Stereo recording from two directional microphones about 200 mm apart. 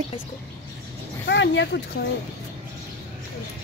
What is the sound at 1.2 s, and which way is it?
Speech, 65° left (ahead or behind).